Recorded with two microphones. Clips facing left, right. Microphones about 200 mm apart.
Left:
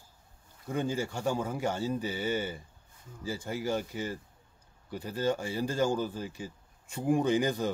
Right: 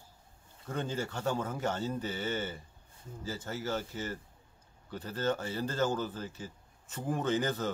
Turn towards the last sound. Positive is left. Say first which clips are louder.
# left 4 dB
turn(degrees=15)  # may be behind; listen again after turning